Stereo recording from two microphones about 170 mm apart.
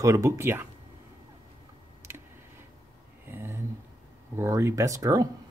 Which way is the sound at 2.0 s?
15° right (ahead or behind).